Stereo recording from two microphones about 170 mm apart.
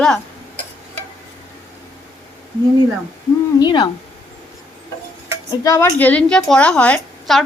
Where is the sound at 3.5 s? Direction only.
25° left (ahead or behind).